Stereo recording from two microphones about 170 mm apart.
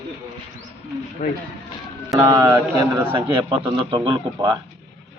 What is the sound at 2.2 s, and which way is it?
Speech, 20° right (ahead or behind).